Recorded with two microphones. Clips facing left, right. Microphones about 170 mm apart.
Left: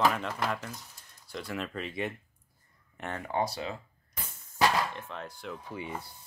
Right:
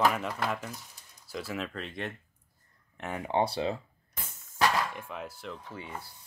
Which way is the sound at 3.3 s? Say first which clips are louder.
Right 4 dB; 30° right (ahead or behind).